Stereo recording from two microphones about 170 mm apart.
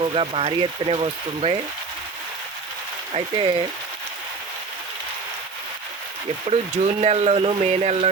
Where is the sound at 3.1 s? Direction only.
30° right (ahead or behind).